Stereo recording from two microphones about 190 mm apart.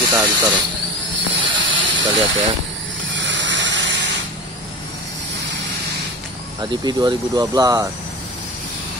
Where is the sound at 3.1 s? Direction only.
75° right (ahead or behind).